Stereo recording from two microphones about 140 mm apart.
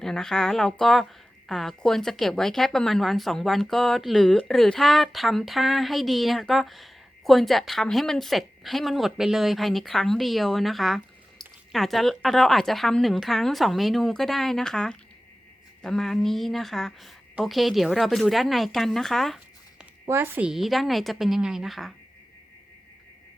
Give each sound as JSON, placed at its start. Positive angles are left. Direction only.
{"t": 0.0, "sound": "speech", "side_deg": 5}
{"t": 20.1, "sound": "a woman's voice", "side_deg": -15}
{"t": 20.5, "sound": "speech", "side_deg": 0}